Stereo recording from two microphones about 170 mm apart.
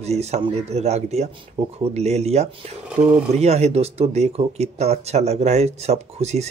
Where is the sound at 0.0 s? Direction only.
40° right (ahead or behind).